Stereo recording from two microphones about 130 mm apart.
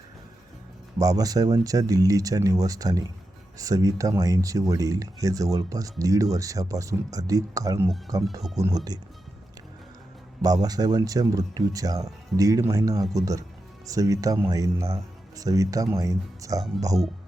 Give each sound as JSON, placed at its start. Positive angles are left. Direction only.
{"t": 0.9, "sound": "speech", "side_deg": -30}
{"t": 10.4, "sound": "speech", "side_deg": -30}